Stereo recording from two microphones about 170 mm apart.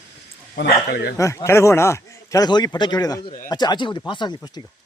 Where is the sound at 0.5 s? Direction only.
70° left (ahead or behind).